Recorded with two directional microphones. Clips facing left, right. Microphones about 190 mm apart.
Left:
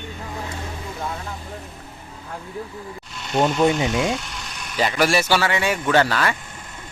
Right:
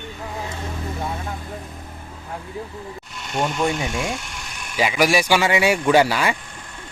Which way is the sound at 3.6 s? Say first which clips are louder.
Left 4 dB; 20° left (ahead or behind).